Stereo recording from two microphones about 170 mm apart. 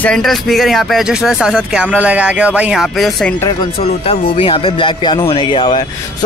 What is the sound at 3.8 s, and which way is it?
Speech, 35° left (ahead or behind).